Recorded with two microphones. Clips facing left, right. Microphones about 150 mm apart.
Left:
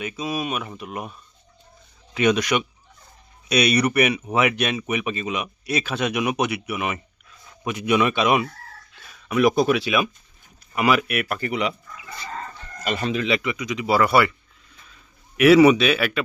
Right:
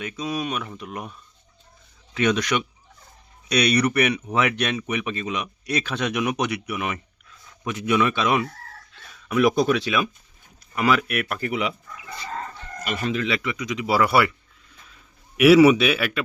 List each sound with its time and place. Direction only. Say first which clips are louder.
0.0 s speech: left 1 dB; 10° left (ahead or behind)
2.1 s speech: left 2 dB; 10° left (ahead or behind)
9.0 s speech: even; centre (ahead or behind)
12.8 s speech: left 1 dB; 25° left (ahead or behind)
13.6 s speech: right 1 dB; centre (ahead or behind)
15.4 s speech: even; 5° right (ahead or behind)